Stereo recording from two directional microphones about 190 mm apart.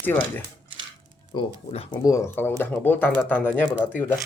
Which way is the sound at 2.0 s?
15° left (ahead or behind).